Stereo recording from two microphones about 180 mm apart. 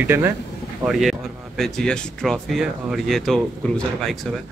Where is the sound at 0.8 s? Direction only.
Centre (ahead or behind).